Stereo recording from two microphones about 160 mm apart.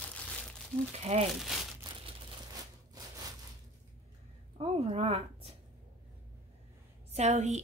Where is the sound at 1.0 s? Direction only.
40° right (ahead or behind).